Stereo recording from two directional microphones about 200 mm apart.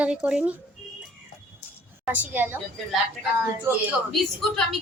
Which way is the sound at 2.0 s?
10° right (ahead or behind).